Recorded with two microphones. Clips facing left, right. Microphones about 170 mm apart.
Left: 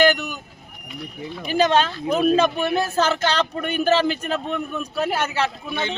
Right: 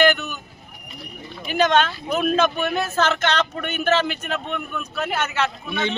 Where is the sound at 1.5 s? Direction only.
35° left (ahead or behind).